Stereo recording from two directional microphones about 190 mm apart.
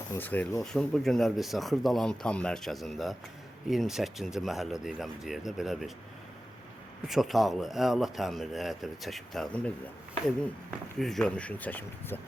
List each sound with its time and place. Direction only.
0.1 s speech: 10° left (ahead or behind)
7.1 s speech: centre (ahead or behind)
11.0 s speech: 5° left (ahead or behind)